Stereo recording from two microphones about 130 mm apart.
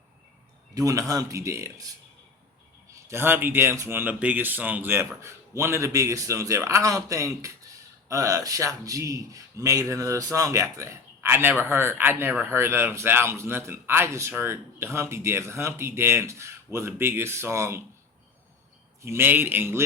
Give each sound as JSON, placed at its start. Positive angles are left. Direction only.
{"t": 0.7, "sound": "speech", "side_deg": -25}
{"t": 2.9, "sound": "speech", "side_deg": -20}
{"t": 19.0, "sound": "speech", "side_deg": -20}